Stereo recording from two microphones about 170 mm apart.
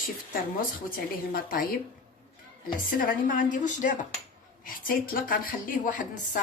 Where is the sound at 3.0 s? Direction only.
55° left (ahead or behind).